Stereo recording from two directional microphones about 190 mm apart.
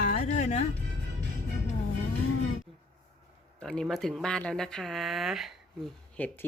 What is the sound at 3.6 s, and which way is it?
Speech, 5° left (ahead or behind).